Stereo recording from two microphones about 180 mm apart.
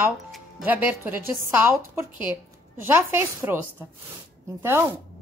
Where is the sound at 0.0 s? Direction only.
5° right (ahead or behind).